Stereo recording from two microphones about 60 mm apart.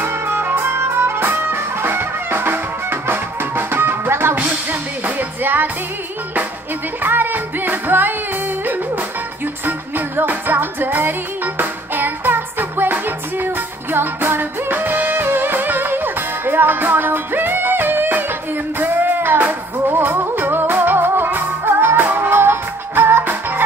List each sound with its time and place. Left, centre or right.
0.0 s music: right
4.4 s music: right
7.0 s music: right
9.7 s music: right